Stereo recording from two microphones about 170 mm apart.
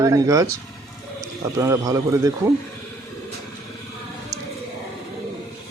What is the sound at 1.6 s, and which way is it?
Speech, 20° right (ahead or behind).